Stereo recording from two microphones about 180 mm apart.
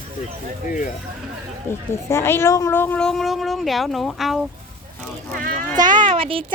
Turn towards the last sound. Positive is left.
turn(degrees=-30)  # may be behind; listen again after turning